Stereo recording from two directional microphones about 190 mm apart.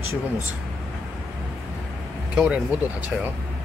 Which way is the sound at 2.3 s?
5° right (ahead or behind).